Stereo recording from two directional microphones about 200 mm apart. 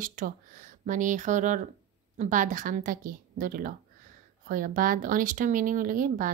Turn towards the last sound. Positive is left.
turn(degrees=-45)  # may be behind; listen again after turning